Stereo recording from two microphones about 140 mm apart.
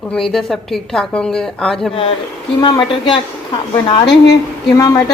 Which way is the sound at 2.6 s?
35° left (ahead or behind).